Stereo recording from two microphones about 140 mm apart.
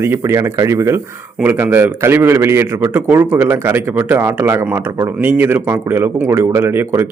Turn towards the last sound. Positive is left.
turn(degrees=-15)  # may be behind; listen again after turning